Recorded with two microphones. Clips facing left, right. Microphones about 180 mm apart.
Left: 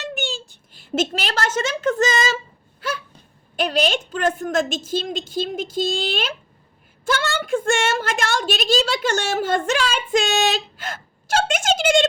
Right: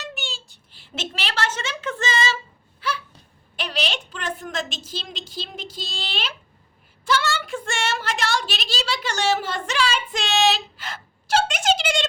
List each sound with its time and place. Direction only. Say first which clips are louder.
0.1 s a child's voice: left 8 dB; 50° left (ahead or behind)
3.5 s a woman's voice: left 8 dB; 45° left (ahead or behind)